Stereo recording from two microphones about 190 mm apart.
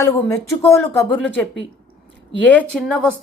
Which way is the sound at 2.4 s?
10° left (ahead or behind).